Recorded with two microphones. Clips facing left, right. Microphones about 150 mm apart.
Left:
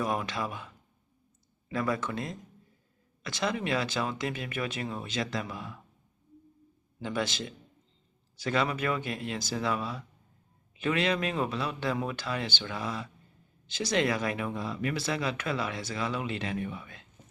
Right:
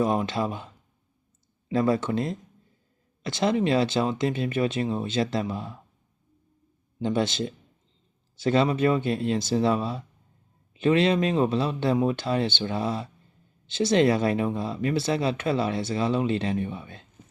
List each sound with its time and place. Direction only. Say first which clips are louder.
0.0 s speech: right 7 dB; 25° right (ahead or behind)
1.7 s speech: right 8 dB; 30° right (ahead or behind)
7.0 s speech: right 7 dB; 25° right (ahead or behind)